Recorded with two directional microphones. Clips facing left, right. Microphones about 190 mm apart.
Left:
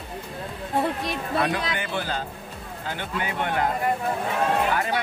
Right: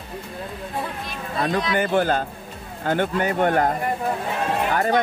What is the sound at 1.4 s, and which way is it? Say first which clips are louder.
A man's voice: right 9 dB; 45° right (ahead or behind).